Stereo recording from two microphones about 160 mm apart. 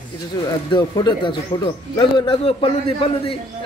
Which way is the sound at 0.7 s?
25° left (ahead or behind).